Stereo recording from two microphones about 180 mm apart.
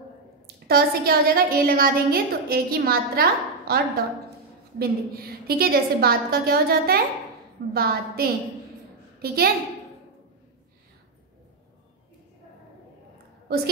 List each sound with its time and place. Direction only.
0.7 s a woman's voice: 60° right (ahead or behind)
13.5 s a woman's voice: 60° right (ahead or behind)